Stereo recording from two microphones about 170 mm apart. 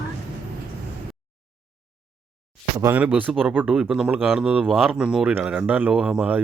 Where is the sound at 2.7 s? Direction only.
20° right (ahead or behind).